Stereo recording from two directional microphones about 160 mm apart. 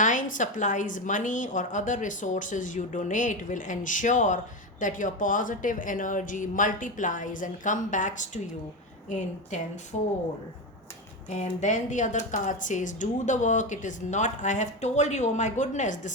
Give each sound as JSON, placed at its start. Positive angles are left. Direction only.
{"t": 0.0, "sound": "a woman's voice", "side_deg": 55}
{"t": 11.3, "sound": "a woman's voice", "side_deg": 45}